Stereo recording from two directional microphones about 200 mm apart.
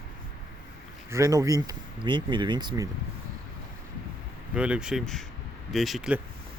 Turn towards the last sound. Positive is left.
turn(degrees=0)  # may be behind; listen again after turning